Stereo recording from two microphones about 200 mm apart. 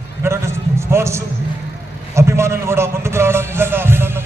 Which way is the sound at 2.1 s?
15° right (ahead or behind).